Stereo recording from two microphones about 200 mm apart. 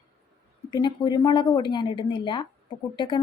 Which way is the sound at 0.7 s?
20° left (ahead or behind).